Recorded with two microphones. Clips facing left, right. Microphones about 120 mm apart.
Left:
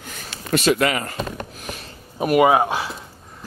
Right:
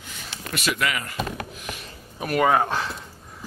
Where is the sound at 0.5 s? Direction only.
30° left (ahead or behind).